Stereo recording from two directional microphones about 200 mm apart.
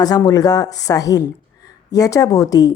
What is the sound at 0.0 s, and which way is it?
A woman's voice, 20° left (ahead or behind).